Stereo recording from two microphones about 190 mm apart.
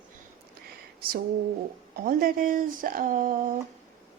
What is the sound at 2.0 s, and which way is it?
A woman's voice, 50° right (ahead or behind).